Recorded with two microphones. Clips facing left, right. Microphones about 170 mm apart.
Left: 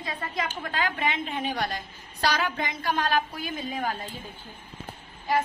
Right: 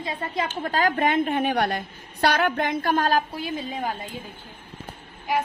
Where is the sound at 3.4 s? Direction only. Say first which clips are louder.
Right 2 dB; 25° right (ahead or behind).